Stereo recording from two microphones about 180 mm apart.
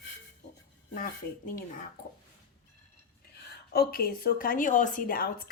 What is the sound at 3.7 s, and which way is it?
A woman's voice, 60° left (ahead or behind).